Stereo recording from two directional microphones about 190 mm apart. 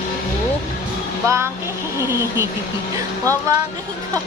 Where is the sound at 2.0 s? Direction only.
15° right (ahead or behind).